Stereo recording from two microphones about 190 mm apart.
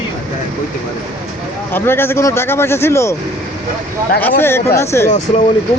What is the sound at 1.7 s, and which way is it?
Speech, 10° left (ahead or behind).